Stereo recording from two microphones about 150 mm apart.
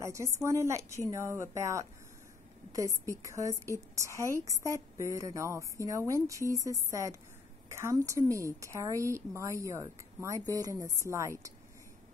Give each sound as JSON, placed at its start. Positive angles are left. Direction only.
{"t": 0.0, "sound": "a woman's voice", "side_deg": -20}